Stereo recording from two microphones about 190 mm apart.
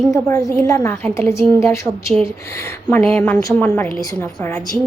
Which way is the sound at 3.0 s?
5° left (ahead or behind).